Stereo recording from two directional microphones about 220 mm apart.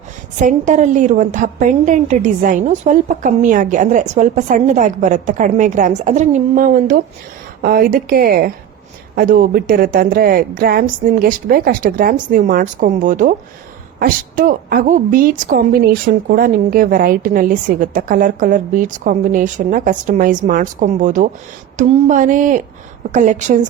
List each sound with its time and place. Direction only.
0.3 s a woman's voice: 35° right (ahead or behind)